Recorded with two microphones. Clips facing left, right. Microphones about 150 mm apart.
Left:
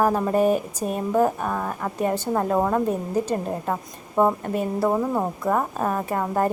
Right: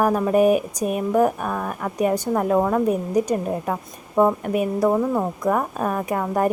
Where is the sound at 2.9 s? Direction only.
15° right (ahead or behind).